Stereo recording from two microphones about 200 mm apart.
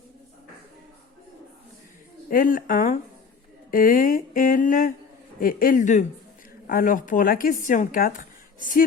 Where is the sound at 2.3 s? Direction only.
45° left (ahead or behind).